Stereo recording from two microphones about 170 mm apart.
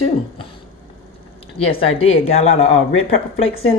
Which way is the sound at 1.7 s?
35° left (ahead or behind).